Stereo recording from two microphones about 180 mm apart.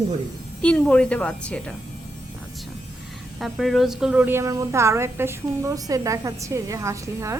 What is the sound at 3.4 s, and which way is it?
Speech, centre (ahead or behind).